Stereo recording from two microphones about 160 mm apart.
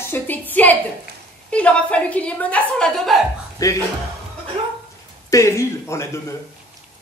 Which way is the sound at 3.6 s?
20° left (ahead or behind).